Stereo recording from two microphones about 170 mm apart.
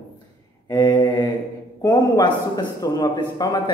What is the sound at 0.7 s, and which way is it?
Speech, 25° left (ahead or behind).